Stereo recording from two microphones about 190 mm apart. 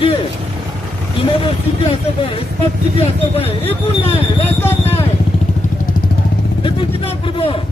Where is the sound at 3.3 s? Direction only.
30° left (ahead or behind).